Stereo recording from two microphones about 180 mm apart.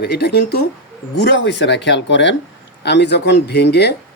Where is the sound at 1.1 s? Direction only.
75° left (ahead or behind); by 2.3 s 90° left.